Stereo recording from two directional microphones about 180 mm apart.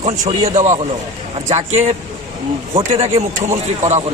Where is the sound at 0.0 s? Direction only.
35° right (ahead or behind).